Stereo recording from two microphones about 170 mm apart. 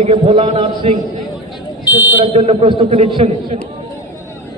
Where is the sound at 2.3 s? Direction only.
35° right (ahead or behind).